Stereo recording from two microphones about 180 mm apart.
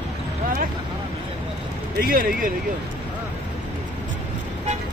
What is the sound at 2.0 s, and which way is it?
Speech, 55° right (ahead or behind).